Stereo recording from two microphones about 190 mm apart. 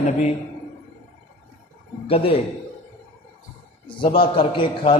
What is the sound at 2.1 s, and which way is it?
Speech, 30° left (ahead or behind).